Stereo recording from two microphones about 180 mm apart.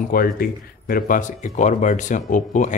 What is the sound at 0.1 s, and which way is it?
Speech, 55° left (ahead or behind).